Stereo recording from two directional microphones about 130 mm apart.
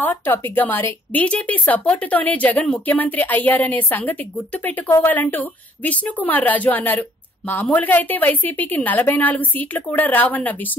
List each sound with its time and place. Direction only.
0.0 s a woman's voice: 15° left (ahead or behind)